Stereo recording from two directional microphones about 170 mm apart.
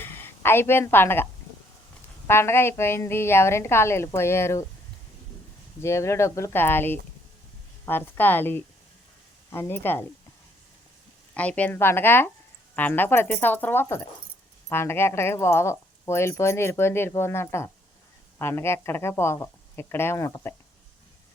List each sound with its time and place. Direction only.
0.0 s a woman's voice: 15° left (ahead or behind)
5.8 s speech: 15° left (ahead or behind)
11.3 s speech: 10° left (ahead or behind)